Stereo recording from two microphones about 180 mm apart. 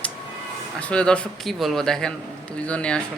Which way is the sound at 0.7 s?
5° left (ahead or behind).